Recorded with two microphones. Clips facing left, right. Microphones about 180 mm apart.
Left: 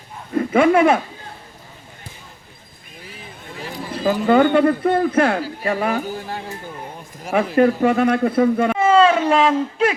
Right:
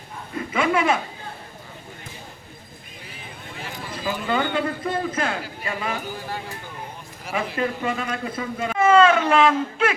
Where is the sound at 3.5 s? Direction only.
35° left (ahead or behind).